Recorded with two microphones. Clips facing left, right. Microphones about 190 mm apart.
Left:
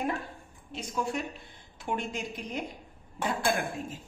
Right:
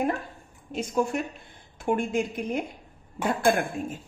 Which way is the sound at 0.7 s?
50° right (ahead or behind).